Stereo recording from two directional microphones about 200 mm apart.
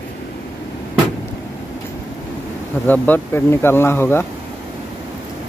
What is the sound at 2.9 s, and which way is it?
Speech, 10° left (ahead or behind).